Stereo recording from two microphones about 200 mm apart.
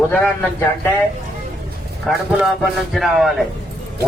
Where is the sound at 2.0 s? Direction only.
Centre (ahead or behind).